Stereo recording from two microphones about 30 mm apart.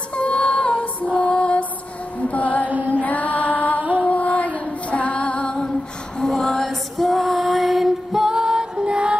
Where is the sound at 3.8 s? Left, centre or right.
Right.